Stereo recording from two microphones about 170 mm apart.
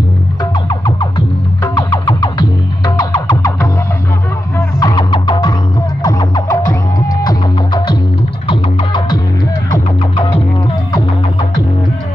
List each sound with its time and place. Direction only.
0.4 s music: 25° left (ahead or behind)